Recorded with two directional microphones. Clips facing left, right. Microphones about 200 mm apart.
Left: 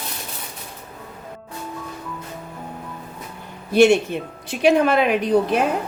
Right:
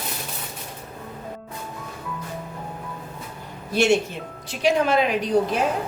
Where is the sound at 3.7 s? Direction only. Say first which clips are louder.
Left 5 dB; 60° left (ahead or behind).